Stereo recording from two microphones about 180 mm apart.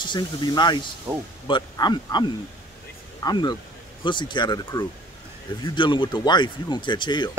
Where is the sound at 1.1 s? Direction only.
15° right (ahead or behind).